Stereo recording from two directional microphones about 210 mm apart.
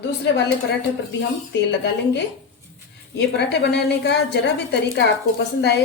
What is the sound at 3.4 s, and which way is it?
A woman's voice, 55° left (ahead or behind).